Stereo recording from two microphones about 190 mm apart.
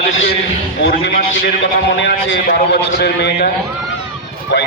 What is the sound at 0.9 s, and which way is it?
Speech, 55° left (ahead or behind).